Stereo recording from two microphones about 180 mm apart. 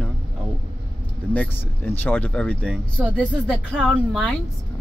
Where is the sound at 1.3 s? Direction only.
10° left (ahead or behind).